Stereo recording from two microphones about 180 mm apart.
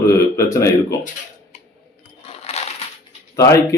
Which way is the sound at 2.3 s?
35° left (ahead or behind).